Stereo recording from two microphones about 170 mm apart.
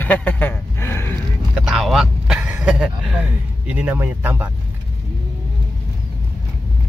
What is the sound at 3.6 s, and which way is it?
Speech, 10° right (ahead or behind).